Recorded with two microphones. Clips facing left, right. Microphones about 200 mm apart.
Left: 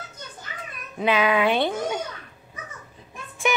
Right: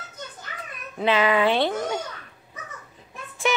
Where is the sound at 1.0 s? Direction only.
15° left (ahead or behind).